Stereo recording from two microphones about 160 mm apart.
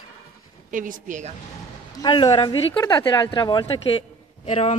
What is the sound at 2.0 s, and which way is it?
Speech, 30° left (ahead or behind).